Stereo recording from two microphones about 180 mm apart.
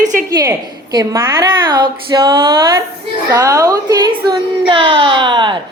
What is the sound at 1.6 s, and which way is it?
A woman's voice, 25° right (ahead or behind).